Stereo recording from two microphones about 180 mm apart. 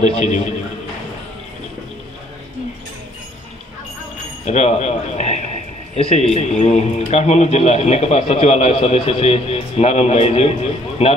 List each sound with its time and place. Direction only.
0.0 s speech: 40° left (ahead or behind)
4.5 s speech: 40° left (ahead or behind)